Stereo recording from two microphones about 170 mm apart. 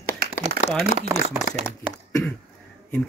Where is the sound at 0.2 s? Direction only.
60° right (ahead or behind).